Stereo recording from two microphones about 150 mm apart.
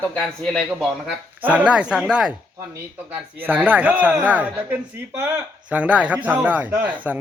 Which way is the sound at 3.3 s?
10° right (ahead or behind).